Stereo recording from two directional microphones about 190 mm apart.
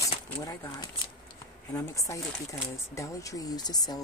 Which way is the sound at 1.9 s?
15° left (ahead or behind).